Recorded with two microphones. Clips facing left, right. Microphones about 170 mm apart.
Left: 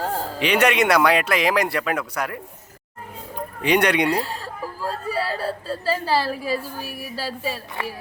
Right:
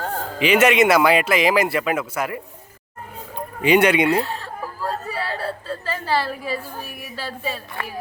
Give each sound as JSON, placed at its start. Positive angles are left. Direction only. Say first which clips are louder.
{"t": 0.3, "sound": "speech", "louder": "right 4 dB", "side_deg": -5}
{"t": 3.6, "sound": "speech", "louder": "right 3 dB", "side_deg": -5}
{"t": 5.1, "sound": "whimper", "louder": "left 2 dB", "side_deg": 35}
{"t": 6.9, "sound": "a sound", "louder": "left 2 dB", "side_deg": 35}
{"t": 7.3, "sound": "speech", "louder": "right 1 dB", "side_deg": 5}